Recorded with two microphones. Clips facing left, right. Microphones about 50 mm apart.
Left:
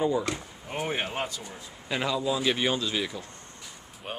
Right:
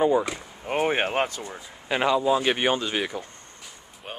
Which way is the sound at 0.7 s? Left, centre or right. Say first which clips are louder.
Right 7 dB; right.